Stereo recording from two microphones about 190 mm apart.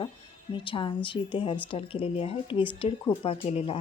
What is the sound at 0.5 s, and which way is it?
Speech, 25° left (ahead or behind).